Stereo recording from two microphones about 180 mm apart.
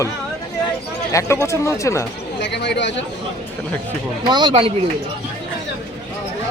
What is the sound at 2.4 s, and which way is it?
Speech, 70° left (ahead or behind).